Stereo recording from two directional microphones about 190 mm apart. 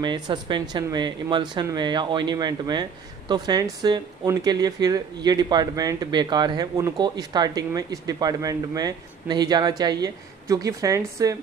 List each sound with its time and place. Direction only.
0.0 s speech: 25° right (ahead or behind)